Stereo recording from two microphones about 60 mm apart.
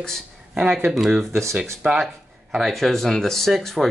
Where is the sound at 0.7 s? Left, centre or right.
Centre.